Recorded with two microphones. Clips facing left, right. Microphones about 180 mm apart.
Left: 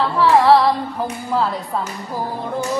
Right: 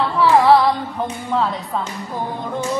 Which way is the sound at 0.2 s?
Centre (ahead or behind).